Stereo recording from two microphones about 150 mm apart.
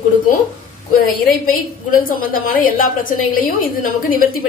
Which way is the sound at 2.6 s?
65° left (ahead or behind).